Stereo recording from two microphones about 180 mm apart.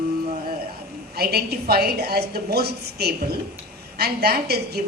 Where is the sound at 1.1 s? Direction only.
60° right (ahead or behind).